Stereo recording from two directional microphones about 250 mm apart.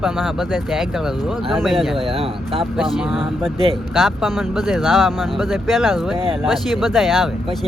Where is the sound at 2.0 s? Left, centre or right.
Right.